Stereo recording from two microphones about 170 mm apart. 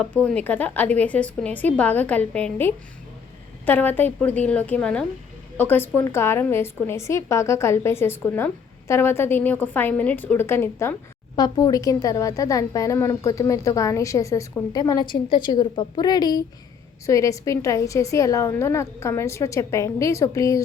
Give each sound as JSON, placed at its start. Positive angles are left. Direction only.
{"t": 0.3, "sound": "a woman's voice", "side_deg": 10}